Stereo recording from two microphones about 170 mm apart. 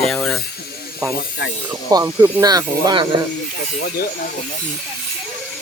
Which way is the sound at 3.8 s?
60° left (ahead or behind).